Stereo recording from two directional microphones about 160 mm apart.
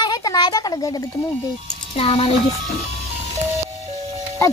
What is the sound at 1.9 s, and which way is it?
Speech, 35° left (ahead or behind).